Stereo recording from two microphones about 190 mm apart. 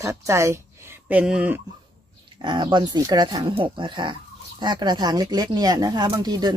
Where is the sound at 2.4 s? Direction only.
25° right (ahead or behind).